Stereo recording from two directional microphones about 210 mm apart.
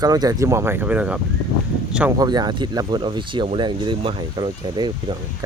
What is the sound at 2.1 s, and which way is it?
Speech, 20° right (ahead or behind).